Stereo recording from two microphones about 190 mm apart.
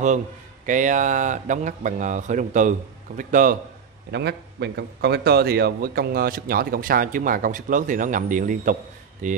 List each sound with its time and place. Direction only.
0.7 s a man's voice: 40° right (ahead or behind)
4.1 s a man's voice: 60° right (ahead or behind); by 9.4 s 40° right (ahead or behind)